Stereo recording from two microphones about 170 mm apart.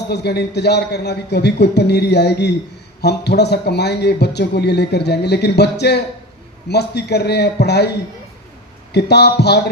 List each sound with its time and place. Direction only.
0.1 s a man's voice: 75° left (ahead or behind)
8.9 s a man's voice: 75° left (ahead or behind)